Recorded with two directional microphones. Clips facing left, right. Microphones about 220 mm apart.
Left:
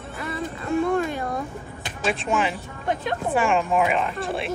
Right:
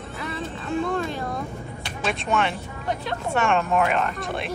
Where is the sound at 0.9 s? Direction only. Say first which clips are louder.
Left 3 dB; 15° left (ahead or behind).